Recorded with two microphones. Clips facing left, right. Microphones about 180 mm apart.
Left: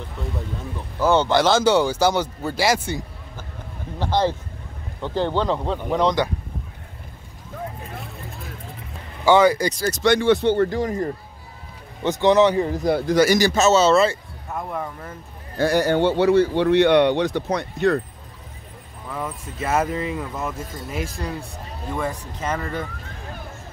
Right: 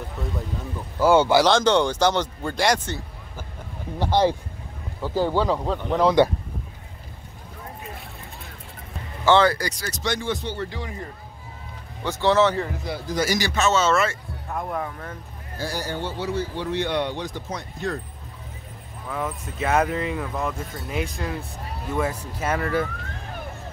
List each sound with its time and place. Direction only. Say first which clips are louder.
0.9 s speech: right 1 dB; 10° right (ahead or behind)
1.4 s speech: left 1 dB; 5° left (ahead or behind)
4.0 s speech: right 1 dB; 15° right (ahead or behind)
8.0 s vehicle: left 4 dB; centre (ahead or behind)
9.2 s speech: left 3 dB; 10° left (ahead or behind)
9.8 s speech: left 9 dB; 45° left (ahead or behind)
10.1 s speech: left 11 dB; 65° left (ahead or behind); by 11.1 s 45° left (ahead or behind)
12.0 s speech: left 4 dB; 20° left (ahead or behind)
12.7 s speech: left 10 dB; 50° left (ahead or behind)
13.0 s speech: left 6 dB; 70° left (ahead or behind)
13.4 s a man's voice: left 5 dB; 40° left (ahead or behind)
14.5 s speech: even; centre (ahead or behind)
15.5 s speech: left 11 dB; 65° left (ahead or behind)
19.0 s speech: right 1 dB; centre (ahead or behind)